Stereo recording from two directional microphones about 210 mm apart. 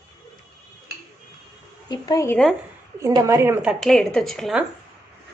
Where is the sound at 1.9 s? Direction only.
15° left (ahead or behind).